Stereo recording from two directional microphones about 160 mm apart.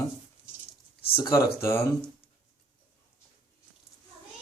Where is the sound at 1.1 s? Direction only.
25° left (ahead or behind).